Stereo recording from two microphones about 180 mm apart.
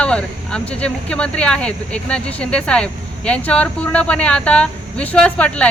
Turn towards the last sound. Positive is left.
turn(degrees=5)  # may be behind; listen again after turning